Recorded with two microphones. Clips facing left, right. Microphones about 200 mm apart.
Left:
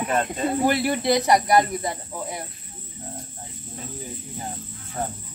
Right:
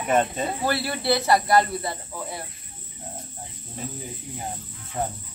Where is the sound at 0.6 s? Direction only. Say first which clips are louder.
Left 3 dB; 15° left (ahead or behind).